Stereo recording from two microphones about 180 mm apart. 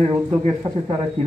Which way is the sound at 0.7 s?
25° right (ahead or behind).